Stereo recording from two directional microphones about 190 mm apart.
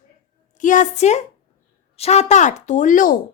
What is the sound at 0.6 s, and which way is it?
Speech, 40° left (ahead or behind).